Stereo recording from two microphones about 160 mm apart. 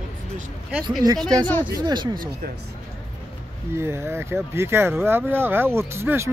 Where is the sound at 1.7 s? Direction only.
25° right (ahead or behind).